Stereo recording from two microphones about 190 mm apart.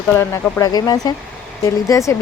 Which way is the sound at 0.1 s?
10° left (ahead or behind).